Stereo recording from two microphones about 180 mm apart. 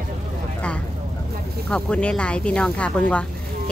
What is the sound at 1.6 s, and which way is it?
A woman's voice, 5° left (ahead or behind).